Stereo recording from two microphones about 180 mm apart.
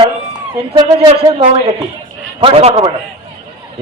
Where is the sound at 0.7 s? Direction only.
35° right (ahead or behind).